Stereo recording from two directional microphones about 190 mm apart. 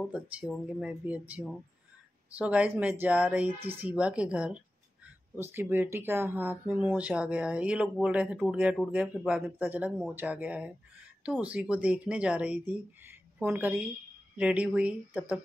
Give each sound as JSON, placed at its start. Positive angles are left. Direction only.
{"t": 0.0, "sound": "speech", "side_deg": -5}
{"t": 3.5, "sound": "speech", "side_deg": -30}
{"t": 3.8, "sound": "speech", "side_deg": -5}